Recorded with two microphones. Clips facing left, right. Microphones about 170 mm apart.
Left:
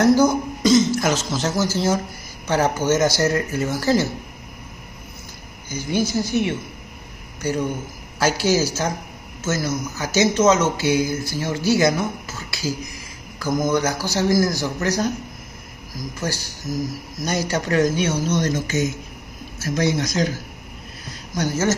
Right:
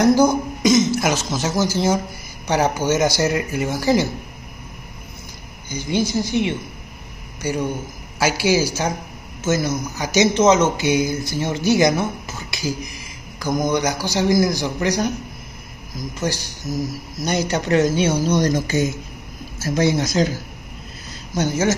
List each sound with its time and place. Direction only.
0.0 s speech: 15° right (ahead or behind)
7.4 s speech: 10° right (ahead or behind)
16.6 s speech: centre (ahead or behind)
17.2 s speech: 20° right (ahead or behind)
21.4 s speech: 15° right (ahead or behind)